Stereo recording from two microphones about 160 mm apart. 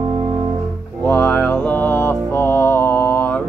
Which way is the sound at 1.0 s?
10° left (ahead or behind).